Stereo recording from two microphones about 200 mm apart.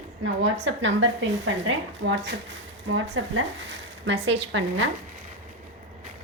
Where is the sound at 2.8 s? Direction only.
85° right.